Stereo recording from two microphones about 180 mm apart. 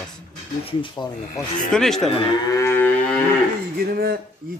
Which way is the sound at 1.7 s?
Centre (ahead or behind).